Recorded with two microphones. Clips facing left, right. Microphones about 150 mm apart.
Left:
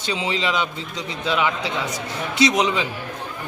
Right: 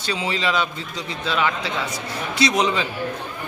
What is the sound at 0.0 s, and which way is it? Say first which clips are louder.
A man's voice: even; 20° left (ahead or behind).